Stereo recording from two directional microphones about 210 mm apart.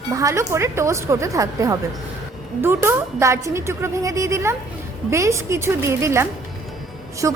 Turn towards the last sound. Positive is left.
turn(degrees=-15)  # may be behind; listen again after turning